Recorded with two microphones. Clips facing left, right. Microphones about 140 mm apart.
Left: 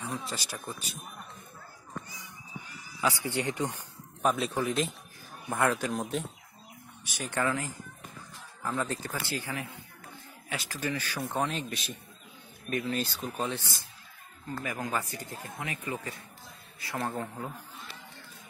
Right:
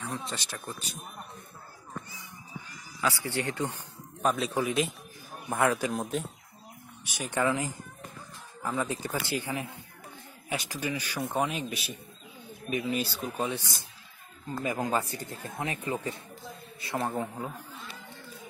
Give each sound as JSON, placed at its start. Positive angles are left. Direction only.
{"t": 0.0, "sound": "speech", "side_deg": 5}
{"t": 2.7, "sound": "speech", "side_deg": 15}
{"t": 4.2, "sound": "speech", "side_deg": 0}
{"t": 7.1, "sound": "a man's voice", "side_deg": -15}